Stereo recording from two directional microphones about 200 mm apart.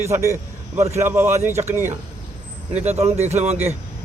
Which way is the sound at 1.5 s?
35° right (ahead or behind).